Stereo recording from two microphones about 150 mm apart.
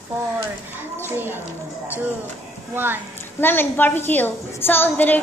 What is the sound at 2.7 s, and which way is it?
Speech, 15° right (ahead or behind).